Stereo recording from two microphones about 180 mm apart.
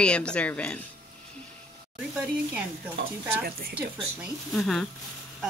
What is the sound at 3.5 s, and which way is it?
Speech, 55° right (ahead or behind).